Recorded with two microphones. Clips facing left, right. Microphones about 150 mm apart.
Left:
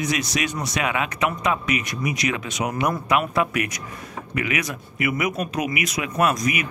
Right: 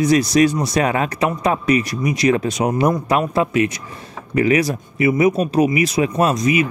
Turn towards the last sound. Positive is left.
turn(degrees=-25)  # may be behind; listen again after turning